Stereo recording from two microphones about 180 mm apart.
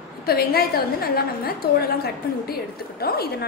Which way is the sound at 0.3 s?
60° left (ahead or behind).